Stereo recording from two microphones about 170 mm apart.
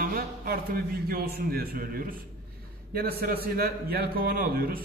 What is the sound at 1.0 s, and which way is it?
A man's voice, 65° right (ahead or behind).